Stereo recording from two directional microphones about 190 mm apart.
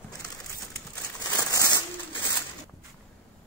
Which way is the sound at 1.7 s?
20° left (ahead or behind).